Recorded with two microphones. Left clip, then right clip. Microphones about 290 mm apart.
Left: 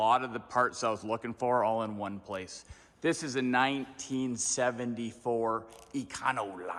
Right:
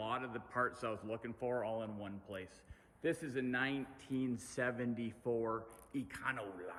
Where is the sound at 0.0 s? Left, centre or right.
Centre.